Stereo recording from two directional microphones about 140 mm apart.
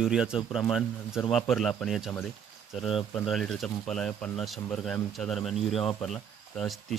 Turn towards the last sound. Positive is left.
turn(degrees=5)  # may be behind; listen again after turning